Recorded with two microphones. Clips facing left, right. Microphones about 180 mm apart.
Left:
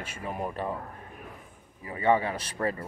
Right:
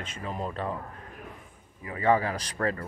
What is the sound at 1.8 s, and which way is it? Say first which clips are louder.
Speech: even; 25° left (ahead or behind).